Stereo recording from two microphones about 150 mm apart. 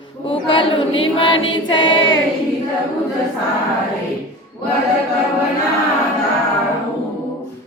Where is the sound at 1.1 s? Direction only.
30° left (ahead or behind).